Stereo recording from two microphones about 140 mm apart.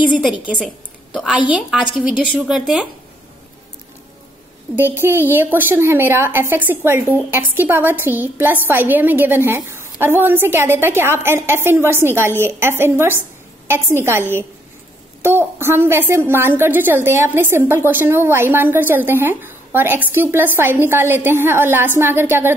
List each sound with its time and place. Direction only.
1.5 s a woman's voice: 5° right (ahead or behind)
4.7 s a woman's voice: 15° right (ahead or behind)
15.2 s a woman's voice: 15° right (ahead or behind)